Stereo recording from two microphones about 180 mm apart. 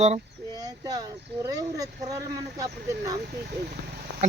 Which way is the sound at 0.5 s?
20° right (ahead or behind).